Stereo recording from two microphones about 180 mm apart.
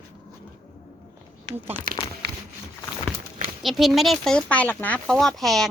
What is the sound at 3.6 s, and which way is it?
A woman's voice, centre (ahead or behind).